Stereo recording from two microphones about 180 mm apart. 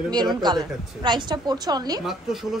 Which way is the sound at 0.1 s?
25° right (ahead or behind).